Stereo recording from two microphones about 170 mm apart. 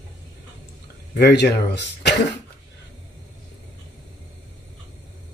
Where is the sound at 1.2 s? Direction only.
80° left.